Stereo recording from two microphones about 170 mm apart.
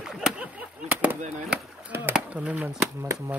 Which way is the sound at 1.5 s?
10° right (ahead or behind).